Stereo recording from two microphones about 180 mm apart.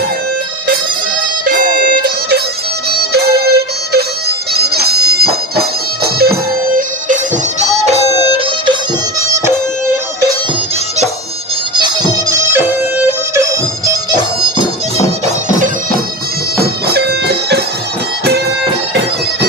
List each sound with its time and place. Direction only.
1.5 s music: 50° right (ahead or behind)
4.5 s bagpipes: 60° right (ahead or behind)
7.9 s music: 35° right (ahead or behind)
11.8 s music: 20° right (ahead or behind)
16.6 s music: 60° right (ahead or behind)